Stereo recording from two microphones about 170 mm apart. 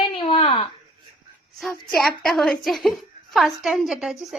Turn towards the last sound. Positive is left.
turn(degrees=0)  # may be behind; listen again after turning